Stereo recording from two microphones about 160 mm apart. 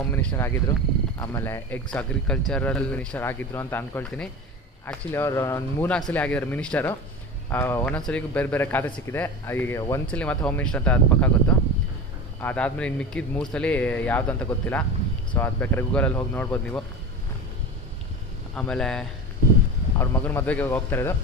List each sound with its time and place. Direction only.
0.0 s speech: 10° left (ahead or behind)
5.9 s speech: 5° left (ahead or behind)
7.8 s speech: 5° left (ahead or behind)
18.6 s speech: 5° left (ahead or behind)
20.0 s speech: 15° left (ahead or behind)